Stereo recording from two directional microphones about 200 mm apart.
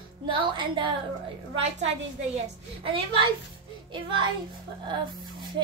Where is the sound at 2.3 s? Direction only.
25° right (ahead or behind).